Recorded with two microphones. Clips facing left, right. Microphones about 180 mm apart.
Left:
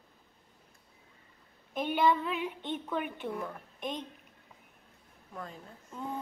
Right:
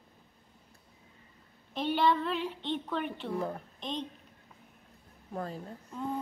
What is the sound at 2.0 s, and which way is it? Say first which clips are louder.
Speech: left 1 dB; 10° left (ahead or behind).